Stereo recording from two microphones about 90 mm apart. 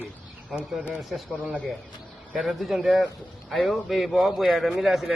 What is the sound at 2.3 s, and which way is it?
Speech, centre (ahead or behind).